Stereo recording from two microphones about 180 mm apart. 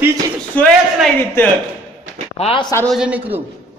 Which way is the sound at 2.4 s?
30° left (ahead or behind).